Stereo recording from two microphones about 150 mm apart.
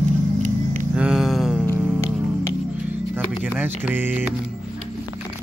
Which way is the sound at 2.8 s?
10° right (ahead or behind).